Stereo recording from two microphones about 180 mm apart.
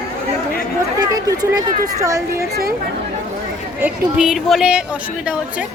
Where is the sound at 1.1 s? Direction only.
20° right (ahead or behind).